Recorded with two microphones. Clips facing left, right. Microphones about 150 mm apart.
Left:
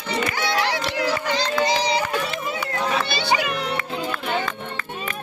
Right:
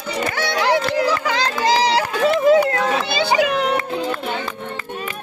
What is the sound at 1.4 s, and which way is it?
Run, 90° right.